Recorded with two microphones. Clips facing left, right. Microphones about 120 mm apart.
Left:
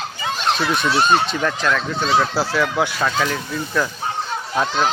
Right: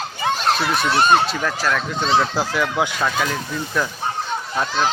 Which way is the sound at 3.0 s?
5° right (ahead or behind).